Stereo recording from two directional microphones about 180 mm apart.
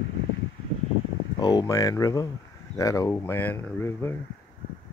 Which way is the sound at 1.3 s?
20° left (ahead or behind).